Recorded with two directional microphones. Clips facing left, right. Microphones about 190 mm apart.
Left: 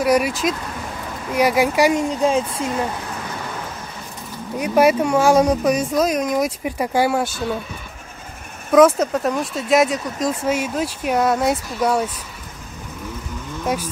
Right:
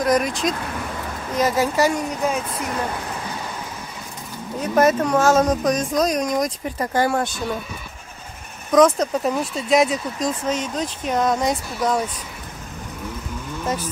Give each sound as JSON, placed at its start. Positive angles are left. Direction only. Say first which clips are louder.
{"t": 0.0, "sound": "speech", "louder": "left 2 dB", "side_deg": 10}
{"t": 2.0, "sound": "speech", "louder": "left 5 dB", "side_deg": 30}
{"t": 4.6, "sound": "speech", "louder": "left 2 dB", "side_deg": 10}
{"t": 8.7, "sound": "speech", "louder": "left 2 dB", "side_deg": 5}